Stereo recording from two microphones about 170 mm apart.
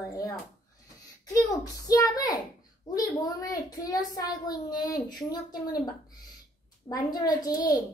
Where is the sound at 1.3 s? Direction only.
20° left (ahead or behind).